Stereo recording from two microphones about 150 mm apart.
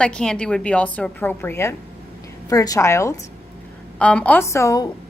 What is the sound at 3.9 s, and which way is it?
Speech, 10° left (ahead or behind).